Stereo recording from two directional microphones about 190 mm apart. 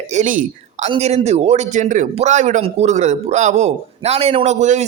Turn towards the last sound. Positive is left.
turn(degrees=-40)  # may be behind; listen again after turning